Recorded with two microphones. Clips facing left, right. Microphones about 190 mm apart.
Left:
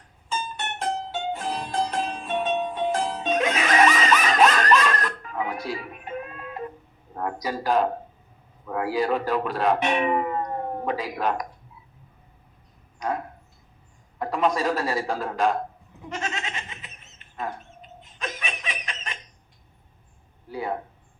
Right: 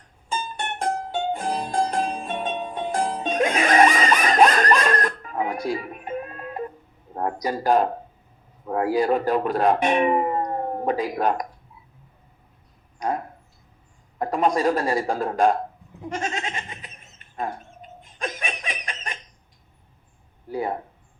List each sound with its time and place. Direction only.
0.3 s music: 45° right (ahead or behind)
7.2 s speech: 45° right (ahead or behind)
14.2 s speech: 45° right (ahead or behind)
16.0 s goat: 45° right (ahead or behind)
18.0 s laughter: 50° right (ahead or behind)
20.5 s speech: 45° right (ahead or behind)